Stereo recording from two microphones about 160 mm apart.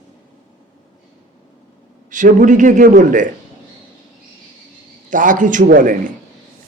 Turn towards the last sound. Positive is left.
turn(degrees=-55)  # may be behind; listen again after turning